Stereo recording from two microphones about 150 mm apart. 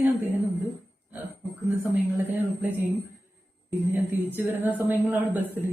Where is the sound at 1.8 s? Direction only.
15° right (ahead or behind).